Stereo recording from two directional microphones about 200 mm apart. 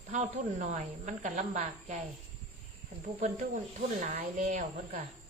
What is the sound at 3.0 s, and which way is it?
A woman's voice, 35° right (ahead or behind).